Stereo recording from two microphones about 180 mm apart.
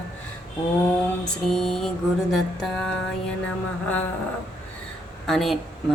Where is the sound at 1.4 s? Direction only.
Centre (ahead or behind).